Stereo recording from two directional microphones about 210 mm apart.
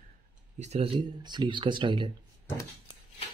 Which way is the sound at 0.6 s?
30° right (ahead or behind).